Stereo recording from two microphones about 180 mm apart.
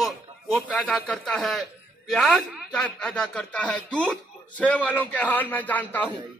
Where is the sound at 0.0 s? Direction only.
5° left (ahead or behind).